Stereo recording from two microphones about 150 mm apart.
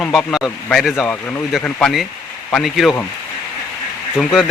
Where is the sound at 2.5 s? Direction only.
Centre (ahead or behind).